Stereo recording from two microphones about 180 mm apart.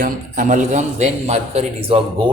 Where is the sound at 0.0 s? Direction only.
45° right (ahead or behind).